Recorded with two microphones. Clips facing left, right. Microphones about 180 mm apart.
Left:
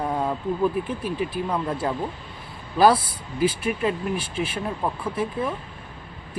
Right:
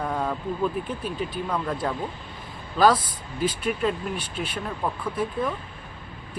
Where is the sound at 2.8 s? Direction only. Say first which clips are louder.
Left 2 dB; 10° left (ahead or behind).